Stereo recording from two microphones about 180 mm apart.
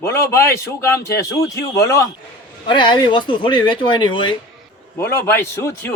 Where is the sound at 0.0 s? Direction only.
15° left (ahead or behind).